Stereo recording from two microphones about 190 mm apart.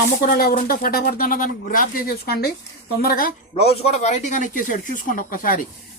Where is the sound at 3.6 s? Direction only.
30° left (ahead or behind).